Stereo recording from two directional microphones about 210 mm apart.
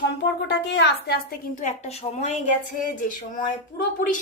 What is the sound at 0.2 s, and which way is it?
Speech, 55° left (ahead or behind).